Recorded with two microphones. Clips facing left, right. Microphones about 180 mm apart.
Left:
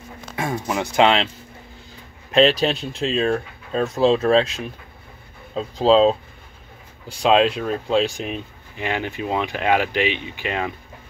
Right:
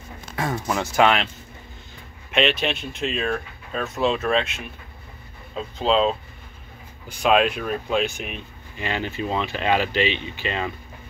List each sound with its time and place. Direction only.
0.4 s speech: 15° left (ahead or behind)
2.3 s speech: 35° left (ahead or behind)
8.7 s speech: 15° left (ahead or behind)